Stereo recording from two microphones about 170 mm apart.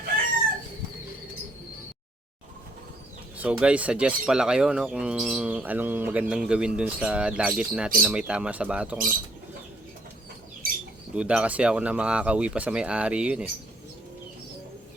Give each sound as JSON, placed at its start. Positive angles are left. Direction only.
{"t": 3.3, "sound": "speech", "side_deg": -5}
{"t": 11.1, "sound": "speech", "side_deg": -5}